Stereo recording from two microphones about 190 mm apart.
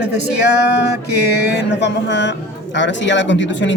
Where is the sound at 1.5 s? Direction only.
65° left (ahead or behind).